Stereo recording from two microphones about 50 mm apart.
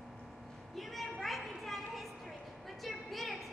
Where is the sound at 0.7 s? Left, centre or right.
Centre.